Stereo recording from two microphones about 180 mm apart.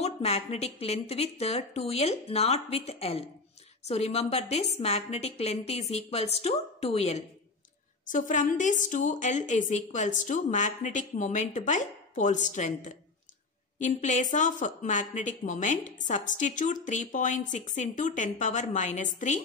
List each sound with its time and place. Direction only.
0.0 s a woman's voice: 35° left (ahead or behind)